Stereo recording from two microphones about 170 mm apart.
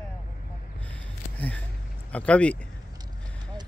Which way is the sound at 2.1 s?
5° left (ahead or behind).